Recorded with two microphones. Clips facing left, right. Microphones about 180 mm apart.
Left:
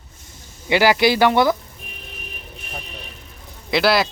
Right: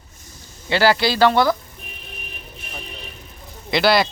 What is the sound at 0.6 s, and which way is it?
Speech, 15° left (ahead or behind).